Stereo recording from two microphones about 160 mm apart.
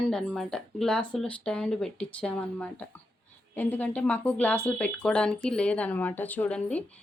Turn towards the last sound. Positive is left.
turn(degrees=10)  # may be behind; listen again after turning